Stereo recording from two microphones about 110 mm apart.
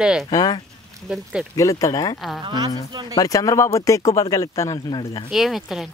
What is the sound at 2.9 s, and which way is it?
Speech, 40° right (ahead or behind).